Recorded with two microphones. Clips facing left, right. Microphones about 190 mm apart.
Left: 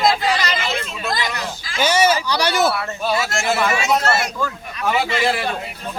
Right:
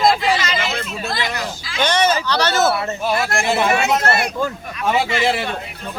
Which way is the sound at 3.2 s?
55° right (ahead or behind).